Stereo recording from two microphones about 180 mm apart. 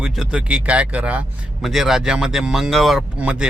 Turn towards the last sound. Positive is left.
turn(degrees=-5)  # may be behind; listen again after turning